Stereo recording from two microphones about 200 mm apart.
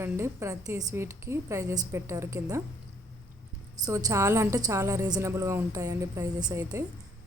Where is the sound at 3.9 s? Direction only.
15° right (ahead or behind).